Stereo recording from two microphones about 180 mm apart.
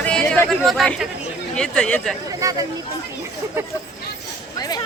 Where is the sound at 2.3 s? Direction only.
20° right (ahead or behind).